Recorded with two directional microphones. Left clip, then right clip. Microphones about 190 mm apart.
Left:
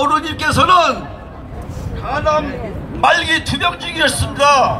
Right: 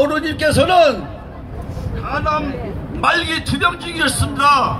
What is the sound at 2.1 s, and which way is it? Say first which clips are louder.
A man's voice: left 3 dB; 20° left (ahead or behind).